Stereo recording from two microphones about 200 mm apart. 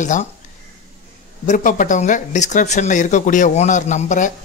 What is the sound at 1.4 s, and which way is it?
Speech, 40° left (ahead or behind).